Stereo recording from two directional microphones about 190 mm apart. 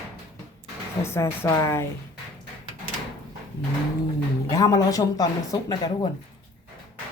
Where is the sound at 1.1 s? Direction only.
15° left (ahead or behind).